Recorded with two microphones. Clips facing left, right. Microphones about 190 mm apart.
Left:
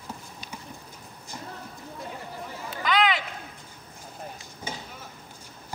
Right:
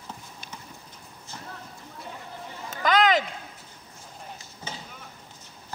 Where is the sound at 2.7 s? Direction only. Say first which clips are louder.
Right 3 dB; 45° right (ahead or behind).